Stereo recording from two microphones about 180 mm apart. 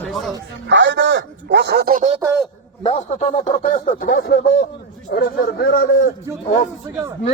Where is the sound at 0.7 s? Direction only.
85° right; by 2.1 s 45° right (ahead or behind).